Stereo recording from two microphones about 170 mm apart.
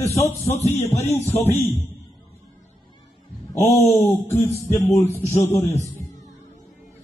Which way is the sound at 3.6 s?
15° left (ahead or behind).